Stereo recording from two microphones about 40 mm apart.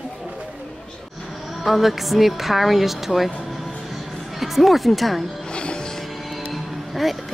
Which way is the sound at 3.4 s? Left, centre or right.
Centre.